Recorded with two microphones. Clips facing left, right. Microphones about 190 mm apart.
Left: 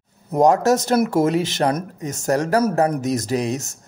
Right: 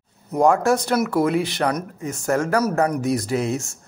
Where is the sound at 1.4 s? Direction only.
25° left (ahead or behind).